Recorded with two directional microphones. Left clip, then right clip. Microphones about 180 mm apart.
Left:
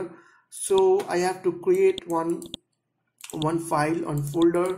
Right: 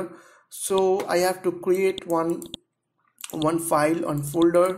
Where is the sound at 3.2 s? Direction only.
30° right (ahead or behind).